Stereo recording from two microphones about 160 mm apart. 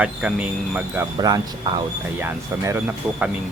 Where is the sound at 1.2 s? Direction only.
25° right (ahead or behind).